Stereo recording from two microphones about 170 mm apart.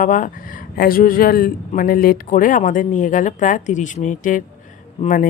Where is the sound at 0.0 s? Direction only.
50° left (ahead or behind).